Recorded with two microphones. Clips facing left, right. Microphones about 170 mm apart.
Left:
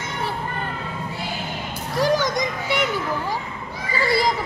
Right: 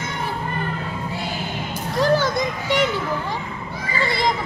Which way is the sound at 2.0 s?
15° left (ahead or behind).